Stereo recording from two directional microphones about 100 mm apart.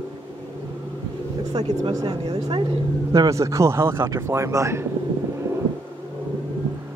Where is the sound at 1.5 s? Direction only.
80° right.